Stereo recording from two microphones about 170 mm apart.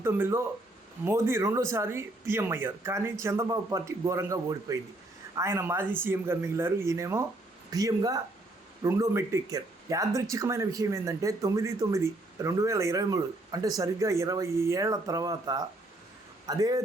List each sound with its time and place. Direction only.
0.0 s speech: 15° right (ahead or behind)